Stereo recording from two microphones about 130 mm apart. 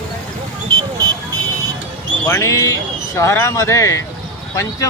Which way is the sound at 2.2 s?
20° left (ahead or behind).